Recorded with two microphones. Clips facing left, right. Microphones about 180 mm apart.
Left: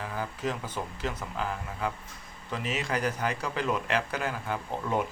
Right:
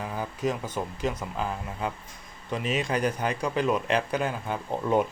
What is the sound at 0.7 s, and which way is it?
Speech, 15° right (ahead or behind).